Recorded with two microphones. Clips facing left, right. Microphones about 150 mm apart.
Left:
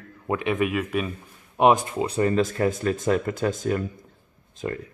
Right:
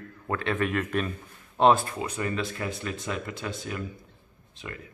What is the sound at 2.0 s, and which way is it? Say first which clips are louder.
Speech: left 8 dB; 35° left (ahead or behind).